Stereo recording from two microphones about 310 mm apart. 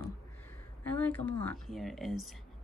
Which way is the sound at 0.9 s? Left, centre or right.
Centre.